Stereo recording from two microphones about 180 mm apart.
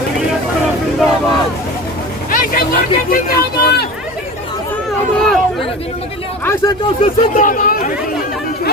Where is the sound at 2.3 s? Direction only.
50° left (ahead or behind).